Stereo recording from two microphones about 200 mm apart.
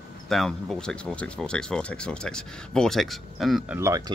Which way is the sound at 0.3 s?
Centre (ahead or behind).